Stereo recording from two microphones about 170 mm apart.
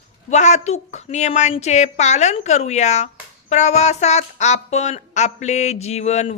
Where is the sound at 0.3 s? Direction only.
45° left (ahead or behind).